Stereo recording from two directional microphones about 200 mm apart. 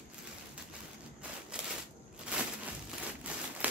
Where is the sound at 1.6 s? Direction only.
5° right (ahead or behind).